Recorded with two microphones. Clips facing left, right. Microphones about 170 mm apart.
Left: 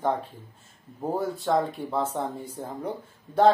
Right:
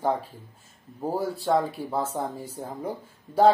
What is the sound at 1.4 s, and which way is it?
Speech, 5° right (ahead or behind).